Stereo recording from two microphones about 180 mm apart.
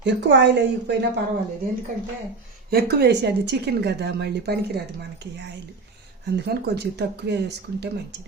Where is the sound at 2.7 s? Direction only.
65° right (ahead or behind).